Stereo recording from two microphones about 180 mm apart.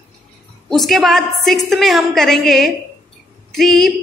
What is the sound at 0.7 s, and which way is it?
A woman's voice, centre (ahead or behind).